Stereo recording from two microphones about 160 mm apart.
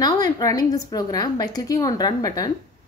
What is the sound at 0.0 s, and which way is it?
A woman's voice, 20° left (ahead or behind).